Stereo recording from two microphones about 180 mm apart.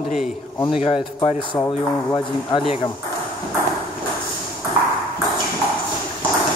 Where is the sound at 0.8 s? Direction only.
30° left (ahead or behind).